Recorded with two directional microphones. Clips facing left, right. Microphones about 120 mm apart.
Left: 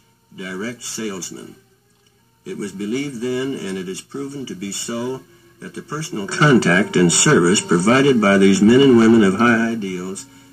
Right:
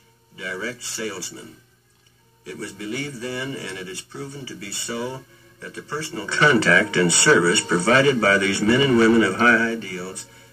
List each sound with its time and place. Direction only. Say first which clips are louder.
0.4 s a man's voice: left 3 dB; 30° left (ahead or behind)
2.4 s a man's voice: left 6 dB; 30° left (ahead or behind)